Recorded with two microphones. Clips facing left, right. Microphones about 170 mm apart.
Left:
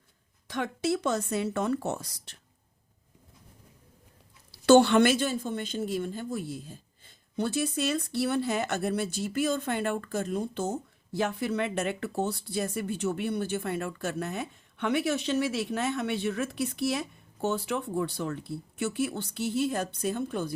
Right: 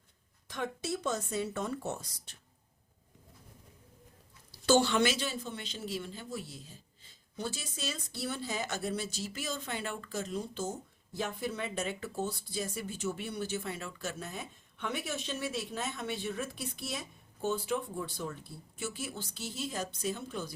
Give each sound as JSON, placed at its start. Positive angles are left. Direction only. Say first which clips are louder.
{"t": 0.4, "sound": "speech", "louder": "left 7 dB", "side_deg": 85}
{"t": 4.5, "sound": "a woman's voice", "louder": "left 8 dB", "side_deg": 65}